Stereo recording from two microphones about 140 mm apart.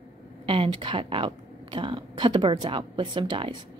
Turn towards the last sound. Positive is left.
turn(degrees=-35)  # may be behind; listen again after turning